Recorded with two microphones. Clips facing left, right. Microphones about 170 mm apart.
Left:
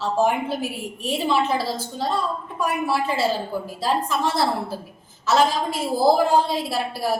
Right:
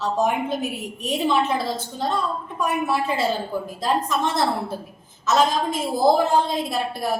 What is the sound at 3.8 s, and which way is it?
A woman's voice, 5° left (ahead or behind).